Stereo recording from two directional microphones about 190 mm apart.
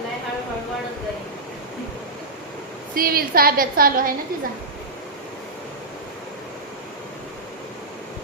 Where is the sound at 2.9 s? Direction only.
50° right (ahead or behind).